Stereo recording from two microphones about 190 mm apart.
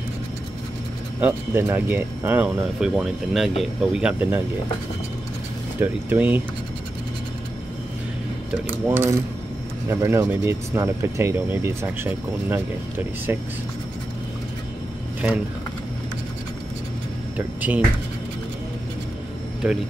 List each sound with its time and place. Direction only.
1.2 s speech: 10° right (ahead or behind)
5.8 s speech: 10° right (ahead or behind)
8.8 s speech: 10° right (ahead or behind)
17.6 s speech: 5° right (ahead or behind)
19.6 s speech: 5° right (ahead or behind)